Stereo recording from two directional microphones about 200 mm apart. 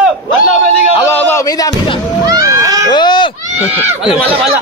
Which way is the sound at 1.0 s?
10° left (ahead or behind).